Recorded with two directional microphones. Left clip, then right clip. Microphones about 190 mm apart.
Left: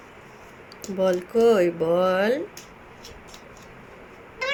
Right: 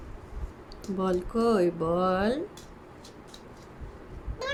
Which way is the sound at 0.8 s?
5° left (ahead or behind).